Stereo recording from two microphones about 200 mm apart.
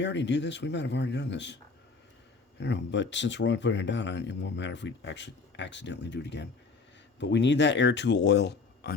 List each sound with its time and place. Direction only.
0.0 s speech: 60° left (ahead or behind)
2.6 s speech: 60° left (ahead or behind)